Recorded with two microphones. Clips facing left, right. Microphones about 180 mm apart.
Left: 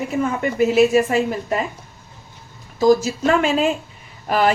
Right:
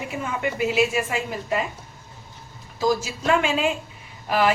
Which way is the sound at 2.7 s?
45° left (ahead or behind).